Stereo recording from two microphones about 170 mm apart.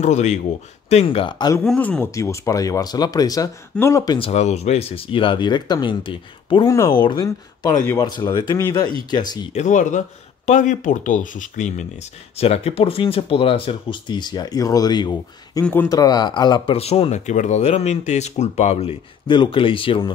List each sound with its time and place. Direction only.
0.0 s speech: 45° left (ahead or behind); by 1.6 s 25° left (ahead or behind)
1.6 s speech: 5° left (ahead or behind); by 4.3 s 25° left (ahead or behind)
4.3 s speech: 40° left (ahead or behind)
9.5 s speech: 45° left (ahead or behind); by 15.6 s 25° left (ahead or behind)
15.6 s speech: 10° left (ahead or behind); by 20.1 s 30° left (ahead or behind)